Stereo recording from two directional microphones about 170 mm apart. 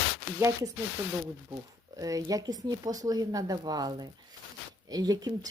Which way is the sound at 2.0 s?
20° right (ahead or behind).